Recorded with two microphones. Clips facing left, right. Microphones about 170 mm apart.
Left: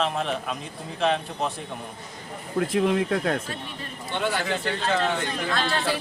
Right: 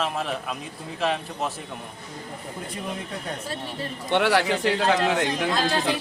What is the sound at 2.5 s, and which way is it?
Speech, 90° left.